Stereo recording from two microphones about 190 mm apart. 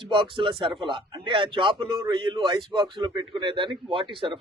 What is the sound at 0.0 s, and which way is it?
Speech, 25° right (ahead or behind).